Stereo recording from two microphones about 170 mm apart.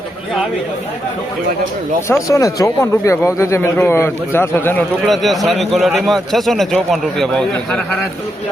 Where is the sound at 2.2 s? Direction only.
20° left (ahead or behind).